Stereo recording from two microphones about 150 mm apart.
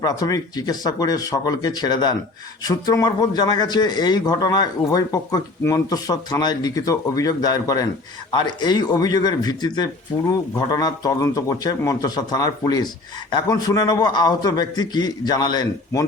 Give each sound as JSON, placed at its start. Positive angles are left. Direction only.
{"t": 0.0, "sound": "speech", "side_deg": 25}